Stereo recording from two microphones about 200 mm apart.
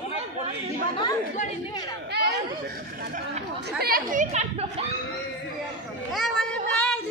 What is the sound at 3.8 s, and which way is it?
Speech, 45° right (ahead or behind).